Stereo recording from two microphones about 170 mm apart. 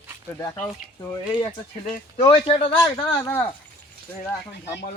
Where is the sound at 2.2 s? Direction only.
30° left (ahead or behind).